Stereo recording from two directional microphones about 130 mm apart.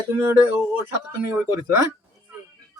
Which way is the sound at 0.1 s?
20° right (ahead or behind).